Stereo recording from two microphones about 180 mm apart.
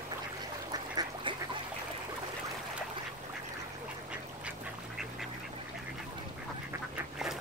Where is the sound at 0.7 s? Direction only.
20° right (ahead or behind).